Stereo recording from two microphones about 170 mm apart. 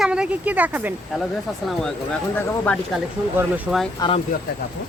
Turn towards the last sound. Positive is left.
turn(degrees=30)  # may be behind; listen again after turning